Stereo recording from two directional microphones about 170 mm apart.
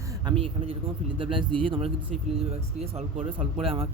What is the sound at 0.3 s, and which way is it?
Speech, 30° right (ahead or behind).